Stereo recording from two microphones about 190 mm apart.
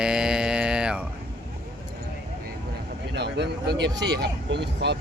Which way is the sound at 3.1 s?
65° right (ahead or behind).